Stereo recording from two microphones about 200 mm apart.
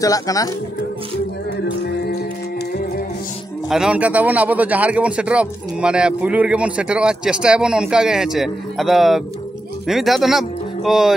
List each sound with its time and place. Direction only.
0.0 s speech: 15° left (ahead or behind)
3.6 s a man's voice: 5° right (ahead or behind)